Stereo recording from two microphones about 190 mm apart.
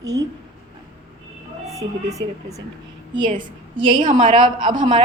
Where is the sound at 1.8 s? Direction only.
15° right (ahead or behind).